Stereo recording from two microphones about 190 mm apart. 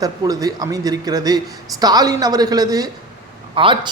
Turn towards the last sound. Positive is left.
turn(degrees=-25)  # may be behind; listen again after turning